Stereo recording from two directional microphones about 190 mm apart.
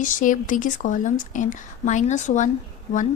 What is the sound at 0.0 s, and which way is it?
Speech, 45° left (ahead or behind).